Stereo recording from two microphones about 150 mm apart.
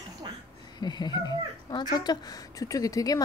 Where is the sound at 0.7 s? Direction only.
30° left (ahead or behind).